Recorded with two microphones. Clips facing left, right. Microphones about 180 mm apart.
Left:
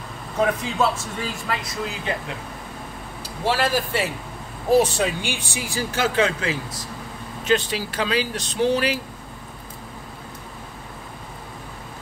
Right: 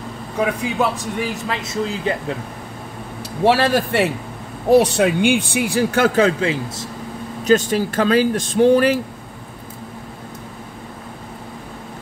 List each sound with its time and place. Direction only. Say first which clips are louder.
0.6 s speech: right 2 dB; 15° right (ahead or behind)
3.4 s a man's voice: right 6 dB; 65° right (ahead or behind)
6.1 s speech: right 5 dB; 30° right (ahead or behind)
7.4 s speech: right 6 dB; 45° right (ahead or behind)